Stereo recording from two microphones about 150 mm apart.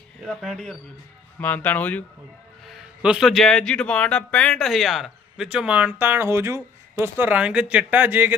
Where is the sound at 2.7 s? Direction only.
5° right (ahead or behind).